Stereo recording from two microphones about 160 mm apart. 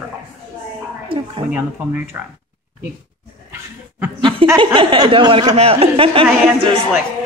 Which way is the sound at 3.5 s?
10° right (ahead or behind).